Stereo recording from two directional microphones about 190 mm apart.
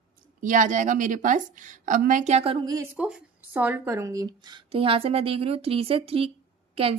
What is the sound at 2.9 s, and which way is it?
Speech, 5° right (ahead or behind).